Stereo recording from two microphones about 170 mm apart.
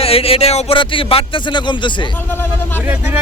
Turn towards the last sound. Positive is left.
turn(degrees=-10)  # may be behind; listen again after turning